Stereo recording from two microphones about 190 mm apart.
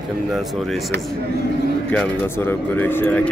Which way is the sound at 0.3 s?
Centre (ahead or behind).